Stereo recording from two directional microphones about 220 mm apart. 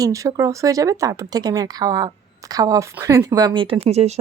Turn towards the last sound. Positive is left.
turn(degrees=-30)  # may be behind; listen again after turning